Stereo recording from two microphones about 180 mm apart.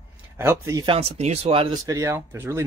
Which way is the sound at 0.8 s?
35° right (ahead or behind).